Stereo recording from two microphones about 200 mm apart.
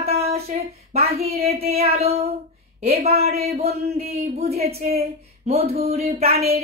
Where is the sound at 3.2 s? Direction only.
30° right (ahead or behind).